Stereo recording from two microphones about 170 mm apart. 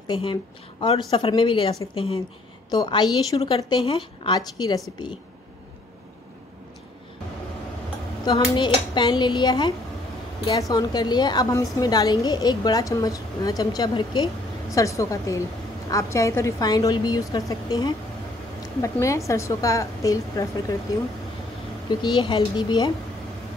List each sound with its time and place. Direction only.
0.1 s a woman's voice: 30° left (ahead or behind)
8.3 s a woman's voice: 25° left (ahead or behind)
21.8 s a woman's voice: 25° left (ahead or behind)